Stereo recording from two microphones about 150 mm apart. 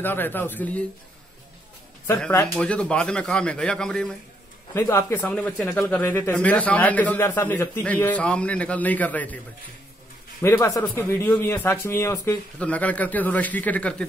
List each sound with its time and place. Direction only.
0.0 s speech: 15° left (ahead or behind)
2.0 s speech: 5° left (ahead or behind)
4.7 s speech: 15° left (ahead or behind)
10.4 s speech: 20° left (ahead or behind)